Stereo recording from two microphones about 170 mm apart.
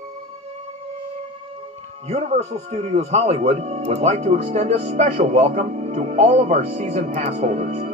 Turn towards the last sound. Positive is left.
turn(degrees=-45)  # may be behind; listen again after turning